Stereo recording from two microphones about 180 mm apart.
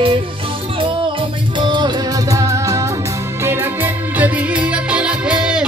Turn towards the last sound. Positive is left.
turn(degrees=-5)  # may be behind; listen again after turning